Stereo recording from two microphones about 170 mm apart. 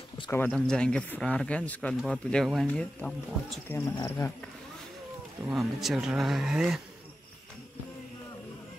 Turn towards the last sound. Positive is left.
turn(degrees=-5)  # may be behind; listen again after turning